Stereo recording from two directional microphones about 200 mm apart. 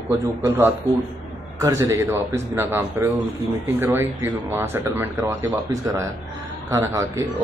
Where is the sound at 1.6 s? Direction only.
15° right (ahead or behind).